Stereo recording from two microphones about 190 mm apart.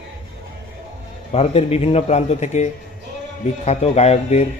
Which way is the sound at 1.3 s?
30° left (ahead or behind).